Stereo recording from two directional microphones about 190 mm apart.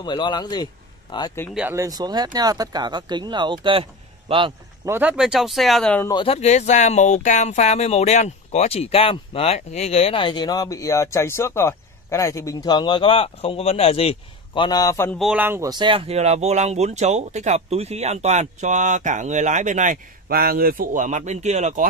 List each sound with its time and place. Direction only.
0.0 s speech: 25° left (ahead or behind)
1.5 s speech: 10° right (ahead or behind); by 4.6 s 25° right (ahead or behind)
4.8 s speech: 10° right (ahead or behind)
6.0 s speech: 25° left (ahead or behind)
15.1 s speech: 5° right (ahead or behind); by 21.8 s 40° right (ahead or behind)